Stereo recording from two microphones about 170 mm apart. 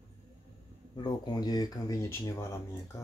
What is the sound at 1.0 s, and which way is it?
Speech, 25° left (ahead or behind).